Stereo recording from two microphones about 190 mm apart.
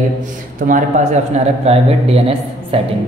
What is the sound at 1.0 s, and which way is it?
A man's voice, 40° right (ahead or behind).